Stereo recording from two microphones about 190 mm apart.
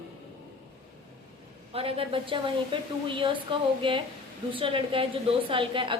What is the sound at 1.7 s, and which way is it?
A woman's voice, 30° right (ahead or behind).